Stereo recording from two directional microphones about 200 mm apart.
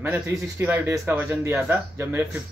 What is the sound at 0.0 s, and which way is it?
Speech, 10° right (ahead or behind).